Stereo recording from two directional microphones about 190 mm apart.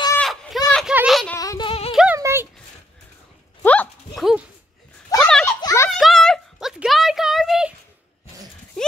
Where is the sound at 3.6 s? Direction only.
10° left (ahead or behind).